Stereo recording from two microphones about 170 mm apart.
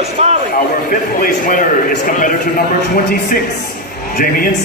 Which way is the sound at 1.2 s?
55° left (ahead or behind).